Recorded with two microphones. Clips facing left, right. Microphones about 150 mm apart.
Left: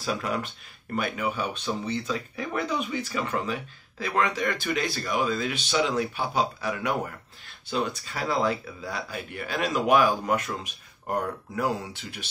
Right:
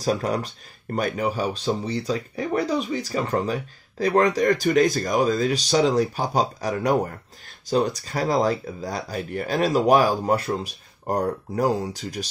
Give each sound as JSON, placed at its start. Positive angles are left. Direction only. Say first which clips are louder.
{"t": 0.0, "sound": "speech", "louder": "right 5 dB", "side_deg": -40}